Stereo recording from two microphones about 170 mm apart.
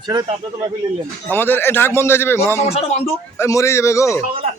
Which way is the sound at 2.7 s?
35° left (ahead or behind).